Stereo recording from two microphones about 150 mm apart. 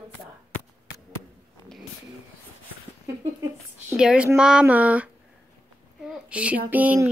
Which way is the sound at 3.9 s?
5° right (ahead or behind).